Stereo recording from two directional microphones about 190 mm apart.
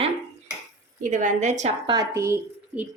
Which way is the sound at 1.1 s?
40° right (ahead or behind).